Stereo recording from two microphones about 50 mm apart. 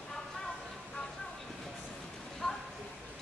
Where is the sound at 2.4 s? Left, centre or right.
Centre.